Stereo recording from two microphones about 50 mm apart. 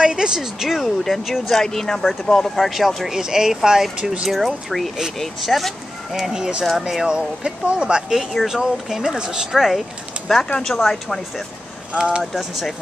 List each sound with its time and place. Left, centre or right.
0.0 s speech: centre
3.1 s speech: centre
6.1 s speech: centre
8.2 s speech: centre
11.9 s speech: centre
12.4 s speech: centre